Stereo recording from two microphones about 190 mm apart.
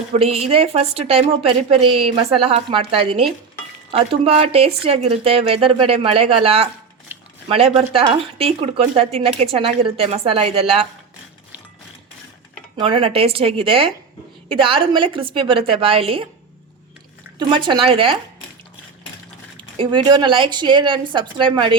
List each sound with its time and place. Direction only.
0.1 s a woman's voice: 30° right (ahead or behind)
7.1 s a sound: 10° right (ahead or behind)
7.4 s speech: 30° right (ahead or behind)
12.7 s a woman's voice: 25° right (ahead or behind)
17.3 s a woman's voice: 25° right (ahead or behind)
19.5 s a woman's voice: 25° right (ahead or behind)